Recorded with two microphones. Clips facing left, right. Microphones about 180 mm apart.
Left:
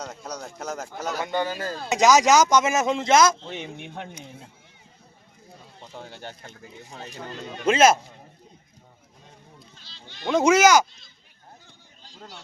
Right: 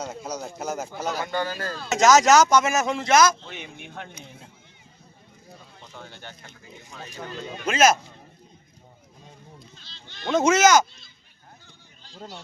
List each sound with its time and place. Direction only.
0.0 s speech: 5° right (ahead or behind)
1.2 s speech: 20° left (ahead or behind)
5.8 s speech: 30° left (ahead or behind)
9.7 s a sound: 10° left (ahead or behind)